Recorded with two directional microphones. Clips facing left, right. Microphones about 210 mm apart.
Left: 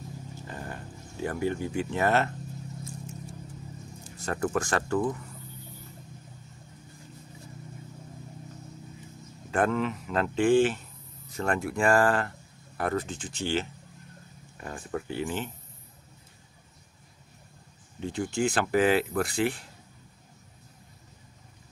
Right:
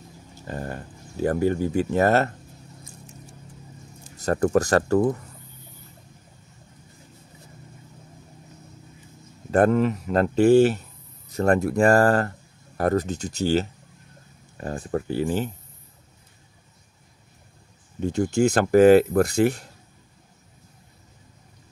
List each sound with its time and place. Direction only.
0.5 s a sound: 40° right (ahead or behind)
1.2 s speech: 40° right (ahead or behind)
4.2 s speech: 40° right (ahead or behind)
9.5 s speech: 40° right (ahead or behind)
18.0 s speech: 40° right (ahead or behind)